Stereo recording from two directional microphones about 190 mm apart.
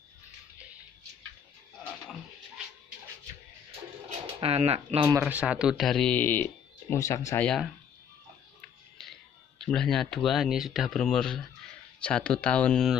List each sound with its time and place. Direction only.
4.4 s speech: 35° right (ahead or behind)
5.2 s speech: 5° right (ahead or behind); by 7.4 s 15° left (ahead or behind)
7.4 s speech: centre (ahead or behind)
9.0 s speech: centre (ahead or behind)